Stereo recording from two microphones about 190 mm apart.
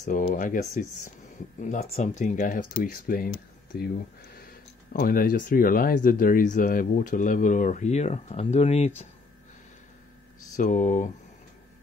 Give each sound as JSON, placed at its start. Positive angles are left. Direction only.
{"t": 0.0, "sound": "speech", "side_deg": 40}
{"t": 4.9, "sound": "speech", "side_deg": 45}
{"t": 10.5, "sound": "speech", "side_deg": 40}